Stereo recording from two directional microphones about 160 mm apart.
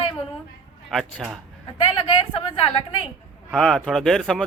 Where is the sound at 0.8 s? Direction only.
Centre (ahead or behind).